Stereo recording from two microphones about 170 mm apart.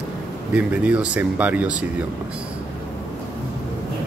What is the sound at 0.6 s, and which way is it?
Speech, 5° right (ahead or behind).